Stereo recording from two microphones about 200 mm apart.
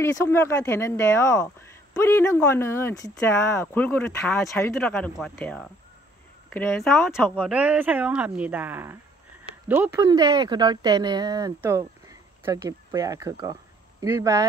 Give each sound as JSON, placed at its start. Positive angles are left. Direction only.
{"t": 0.0, "sound": "speech", "side_deg": 15}
{"t": 7.3, "sound": "speech", "side_deg": -5}